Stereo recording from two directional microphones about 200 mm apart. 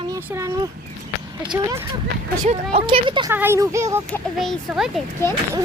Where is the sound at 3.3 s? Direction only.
10° right (ahead or behind).